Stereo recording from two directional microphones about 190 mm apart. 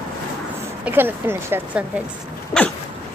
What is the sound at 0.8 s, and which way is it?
Speech, 10° right (ahead or behind).